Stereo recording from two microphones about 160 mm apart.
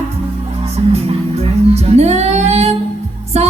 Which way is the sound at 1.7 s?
40° right (ahead or behind).